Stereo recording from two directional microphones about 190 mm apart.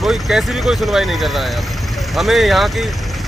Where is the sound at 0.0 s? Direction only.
Centre (ahead or behind).